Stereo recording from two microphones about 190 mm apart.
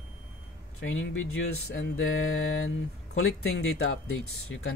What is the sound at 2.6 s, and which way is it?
Speech, 90° left.